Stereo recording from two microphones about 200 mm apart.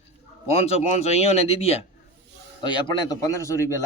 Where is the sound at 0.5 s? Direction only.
30° left (ahead or behind).